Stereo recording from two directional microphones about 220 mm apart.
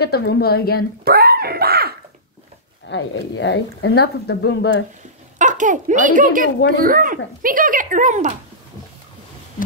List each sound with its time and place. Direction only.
0.0 s speech: 45° left (ahead or behind)
1.0 s dog: 45° right (ahead or behind)
2.9 s speech: 55° left (ahead or behind)
5.4 s a child's voice: 35° right (ahead or behind)